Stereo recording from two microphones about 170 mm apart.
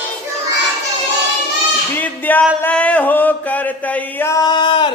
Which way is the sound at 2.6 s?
10° left (ahead or behind).